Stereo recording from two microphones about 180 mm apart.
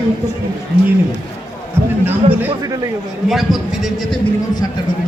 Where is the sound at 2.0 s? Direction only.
10° right (ahead or behind).